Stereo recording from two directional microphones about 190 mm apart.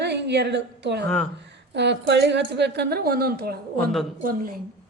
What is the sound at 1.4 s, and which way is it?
A woman's voice, 65° right (ahead or behind).